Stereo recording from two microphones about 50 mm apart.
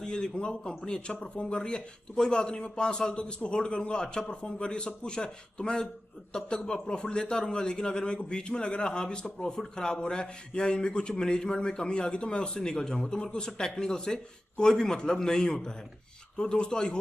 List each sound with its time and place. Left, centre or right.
0.0 s a man's voice: centre